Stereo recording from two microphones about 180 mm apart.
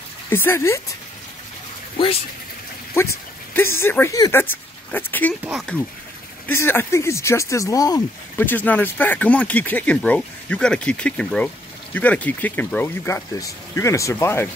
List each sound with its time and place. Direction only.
0.3 s speech: 10° left (ahead or behind)
3.5 s speech: 15° left (ahead or behind)
6.4 s speech: 10° left (ahead or behind)